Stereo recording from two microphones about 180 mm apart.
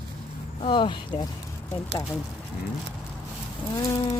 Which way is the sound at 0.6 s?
25° left (ahead or behind).